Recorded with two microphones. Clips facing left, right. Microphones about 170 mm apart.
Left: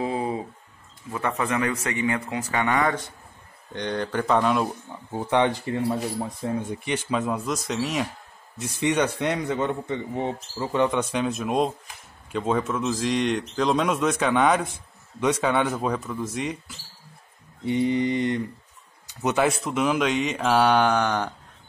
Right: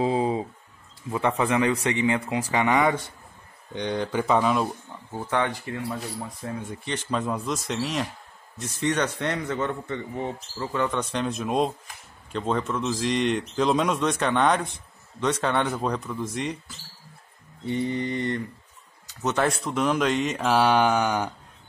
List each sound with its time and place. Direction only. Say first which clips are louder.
0.0 s a sound: right 3 dB; 25° right (ahead or behind)
1.1 s a man's voice: right 3 dB; 20° right (ahead or behind); by 4.6 s centre (ahead or behind)
5.1 s a man's voice: left 4 dB; 20° left (ahead or behind)
11.0 s a man's voice: left 2 dB; 5° left (ahead or behind)
17.6 s a man's voice: left 4 dB; 15° left (ahead or behind); by 21.3 s 10° right (ahead or behind)